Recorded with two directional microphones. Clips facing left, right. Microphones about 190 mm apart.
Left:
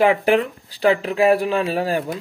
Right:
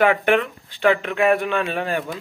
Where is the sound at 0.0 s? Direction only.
30° left (ahead or behind).